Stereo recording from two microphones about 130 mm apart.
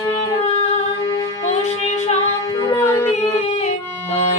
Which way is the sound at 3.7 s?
55° left (ahead or behind).